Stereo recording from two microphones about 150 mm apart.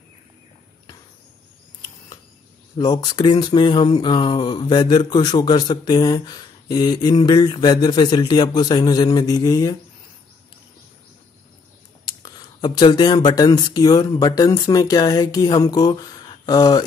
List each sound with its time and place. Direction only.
2.8 s speech: 30° left (ahead or behind)
12.0 s speech: 25° left (ahead or behind)